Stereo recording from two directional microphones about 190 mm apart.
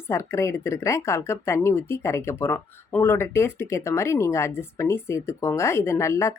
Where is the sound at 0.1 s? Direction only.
15° left (ahead or behind).